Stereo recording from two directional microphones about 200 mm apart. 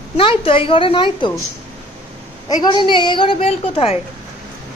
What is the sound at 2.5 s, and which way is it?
A woman's voice, 20° left (ahead or behind).